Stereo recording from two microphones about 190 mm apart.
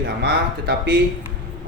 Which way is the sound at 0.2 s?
60° right (ahead or behind).